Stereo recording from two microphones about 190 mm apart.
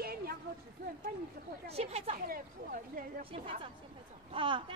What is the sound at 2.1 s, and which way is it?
Speech, 50° right (ahead or behind).